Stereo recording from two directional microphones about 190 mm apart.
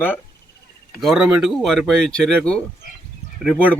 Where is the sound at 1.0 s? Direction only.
Centre (ahead or behind).